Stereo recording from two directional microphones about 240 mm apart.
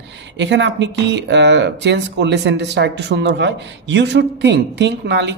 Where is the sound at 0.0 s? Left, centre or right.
Right.